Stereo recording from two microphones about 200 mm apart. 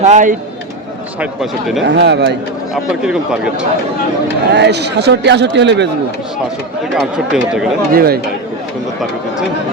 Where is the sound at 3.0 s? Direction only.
5° right (ahead or behind).